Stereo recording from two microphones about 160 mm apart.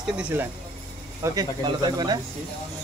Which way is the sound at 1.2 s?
25° right (ahead or behind).